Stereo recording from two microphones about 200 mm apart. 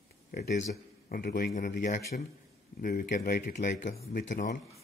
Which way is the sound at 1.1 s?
45° left (ahead or behind).